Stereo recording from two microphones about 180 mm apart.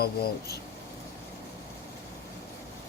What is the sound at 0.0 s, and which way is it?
Speech, 60° left (ahead or behind).